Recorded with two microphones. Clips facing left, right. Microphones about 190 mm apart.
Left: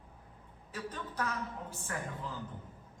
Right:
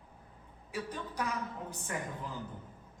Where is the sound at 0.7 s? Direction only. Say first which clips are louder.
Right 2 dB; 10° right (ahead or behind).